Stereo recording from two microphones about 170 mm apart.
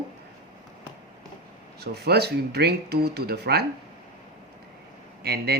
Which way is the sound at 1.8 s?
70° right (ahead or behind).